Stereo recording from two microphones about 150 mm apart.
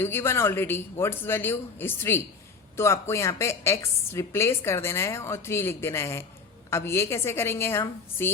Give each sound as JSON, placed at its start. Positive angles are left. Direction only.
{"t": 0.0, "sound": "a woman's voice", "side_deg": 15}